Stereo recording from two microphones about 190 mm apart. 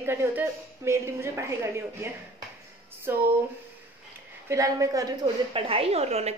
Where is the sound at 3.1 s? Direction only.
15° right (ahead or behind).